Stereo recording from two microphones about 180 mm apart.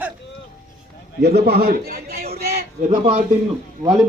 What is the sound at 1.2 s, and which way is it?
A man's voice, 65° right (ahead or behind).